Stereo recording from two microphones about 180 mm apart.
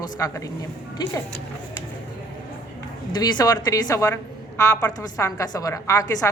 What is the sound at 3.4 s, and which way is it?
A woman's voice, 20° left (ahead or behind).